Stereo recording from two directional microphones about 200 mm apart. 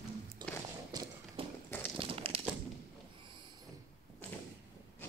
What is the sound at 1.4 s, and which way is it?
Walk, 25° right (ahead or behind).